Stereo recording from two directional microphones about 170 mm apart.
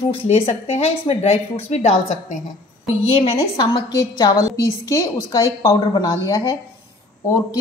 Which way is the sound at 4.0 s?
20° left (ahead or behind).